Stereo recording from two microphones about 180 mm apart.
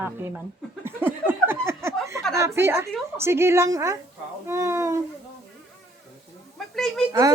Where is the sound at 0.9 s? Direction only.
10° right (ahead or behind).